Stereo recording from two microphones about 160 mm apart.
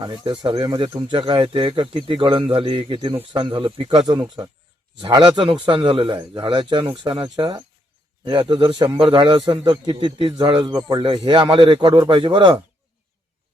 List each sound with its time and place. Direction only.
0.0 s a man's voice: 30° right (ahead or behind)